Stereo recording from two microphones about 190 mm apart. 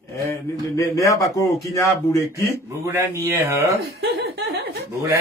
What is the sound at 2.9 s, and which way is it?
Speech, 10° right (ahead or behind).